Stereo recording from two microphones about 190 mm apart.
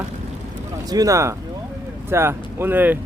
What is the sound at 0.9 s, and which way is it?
Speech, 20° right (ahead or behind).